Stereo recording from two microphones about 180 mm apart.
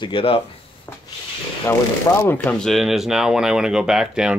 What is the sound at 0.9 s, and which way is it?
Rub, 10° left (ahead or behind).